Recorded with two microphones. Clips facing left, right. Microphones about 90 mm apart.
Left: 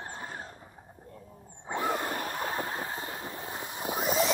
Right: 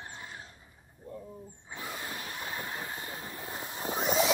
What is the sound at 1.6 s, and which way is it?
Vehicle, 60° left (ahead or behind).